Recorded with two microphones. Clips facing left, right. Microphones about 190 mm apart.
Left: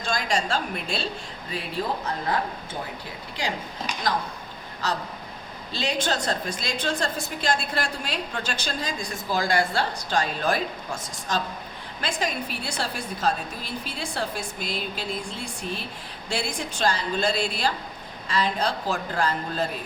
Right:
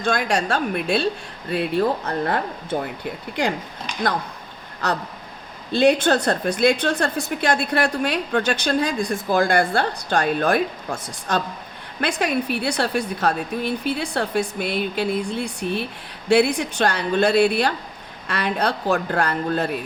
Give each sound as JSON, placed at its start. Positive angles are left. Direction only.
{"t": 0.0, "sound": "a woman's voice", "side_deg": -60}
{"t": 4.8, "sound": "a woman's voice", "side_deg": -60}